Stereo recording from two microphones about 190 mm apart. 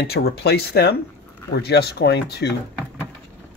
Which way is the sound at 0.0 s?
60° left (ahead or behind).